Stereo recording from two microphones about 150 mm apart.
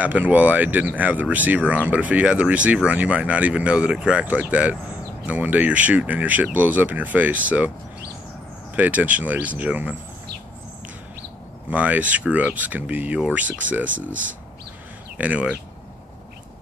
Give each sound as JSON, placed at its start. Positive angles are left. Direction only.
{"t": 0.0, "sound": "speech", "side_deg": -10}
{"t": 8.7, "sound": "speech", "side_deg": -10}
{"t": 11.7, "sound": "speech", "side_deg": -10}